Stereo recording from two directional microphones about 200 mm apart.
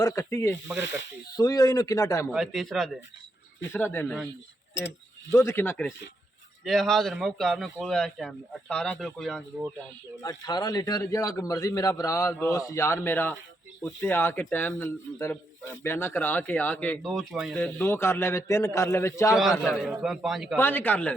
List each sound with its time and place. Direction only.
0.0 s a man's voice: 15° left (ahead or behind)
0.8 s speech: 65° left (ahead or behind)
1.3 s a man's voice: 20° left (ahead or behind)
2.3 s a man's voice: centre (ahead or behind)
5.3 s a man's voice: 15° left (ahead or behind)
10.2 s a man's voice: 20° left (ahead or behind); by 17.6 s centre (ahead or behind)
17.6 s a man's voice: 10° left (ahead or behind)
19.4 s speech: centre (ahead or behind)
20.6 s a man's voice: 10° left (ahead or behind)